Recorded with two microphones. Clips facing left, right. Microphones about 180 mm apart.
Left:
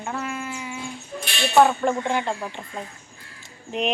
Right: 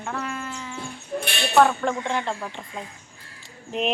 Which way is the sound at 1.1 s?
50° right (ahead or behind).